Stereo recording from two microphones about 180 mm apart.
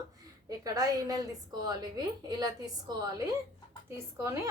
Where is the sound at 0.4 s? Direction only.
20° right (ahead or behind).